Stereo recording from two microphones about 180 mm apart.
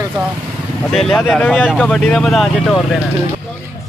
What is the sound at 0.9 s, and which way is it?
Speech, 5° left (ahead or behind).